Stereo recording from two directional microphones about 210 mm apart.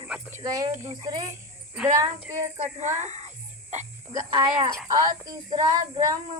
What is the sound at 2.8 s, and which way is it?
Music, 35° right (ahead or behind).